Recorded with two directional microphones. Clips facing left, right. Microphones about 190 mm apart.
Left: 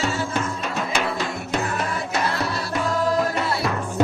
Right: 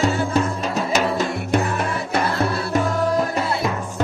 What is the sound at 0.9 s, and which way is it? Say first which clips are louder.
Music: right 4 dB; 45° right (ahead or behind).